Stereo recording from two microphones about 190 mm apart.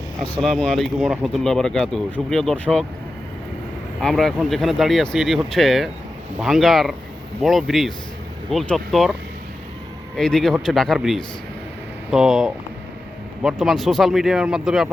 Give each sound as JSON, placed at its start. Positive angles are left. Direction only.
{"t": 0.4, "sound": "speech", "side_deg": 5}
{"t": 4.0, "sound": "speech", "side_deg": 0}
{"t": 10.2, "sound": "speech", "side_deg": 5}